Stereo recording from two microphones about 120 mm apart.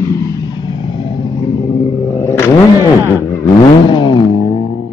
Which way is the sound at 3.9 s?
40° left (ahead or behind).